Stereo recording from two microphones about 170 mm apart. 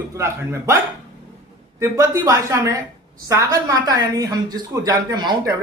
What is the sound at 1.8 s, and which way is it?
A woman's voice, 20° right (ahead or behind).